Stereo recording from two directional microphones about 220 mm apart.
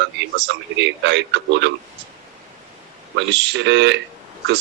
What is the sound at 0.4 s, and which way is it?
Speech, 50° right (ahead or behind).